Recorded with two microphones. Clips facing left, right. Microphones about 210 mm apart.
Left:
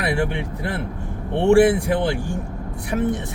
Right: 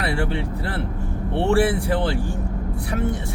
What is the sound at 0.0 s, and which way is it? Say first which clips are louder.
Speech: left 2 dB; 15° left (ahead or behind).